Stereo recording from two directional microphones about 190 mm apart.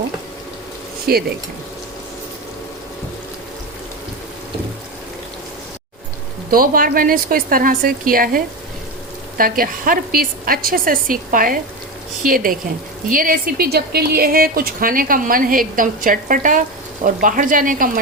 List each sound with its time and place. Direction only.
1.1 s speech: 55° right (ahead or behind)
6.5 s speech: 50° right (ahead or behind)
9.4 s speech: 50° right (ahead or behind)